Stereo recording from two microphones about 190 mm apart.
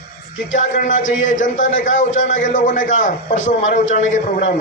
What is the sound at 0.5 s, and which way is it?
A man's voice, 40° left (ahead or behind).